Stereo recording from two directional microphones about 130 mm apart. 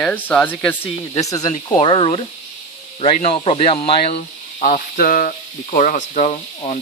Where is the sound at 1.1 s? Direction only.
25° left (ahead or behind).